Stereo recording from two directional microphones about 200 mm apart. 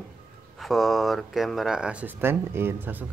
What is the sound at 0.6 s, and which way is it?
Speech, centre (ahead or behind).